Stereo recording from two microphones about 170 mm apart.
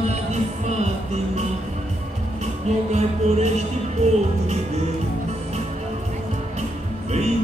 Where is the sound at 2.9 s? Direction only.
40° right (ahead or behind).